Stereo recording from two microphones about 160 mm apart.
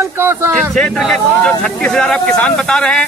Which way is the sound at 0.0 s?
15° right (ahead or behind).